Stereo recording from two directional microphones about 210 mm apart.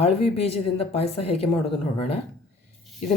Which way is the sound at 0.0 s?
30° left (ahead or behind).